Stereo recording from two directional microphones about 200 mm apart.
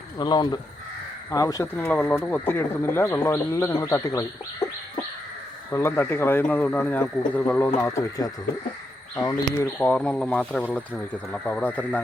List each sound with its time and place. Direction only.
0.2 s speech: 20° left (ahead or behind)
5.7 s speech: 10° left (ahead or behind)